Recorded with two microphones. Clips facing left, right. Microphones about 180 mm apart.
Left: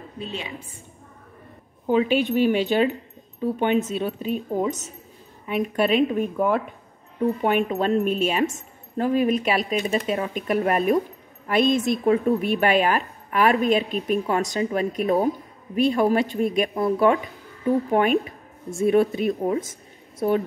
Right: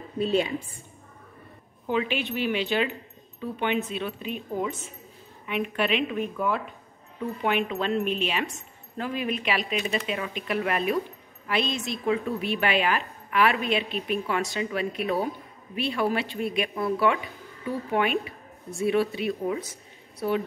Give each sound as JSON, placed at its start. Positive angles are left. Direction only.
{"t": 1.9, "sound": "a woman's voice", "side_deg": 40}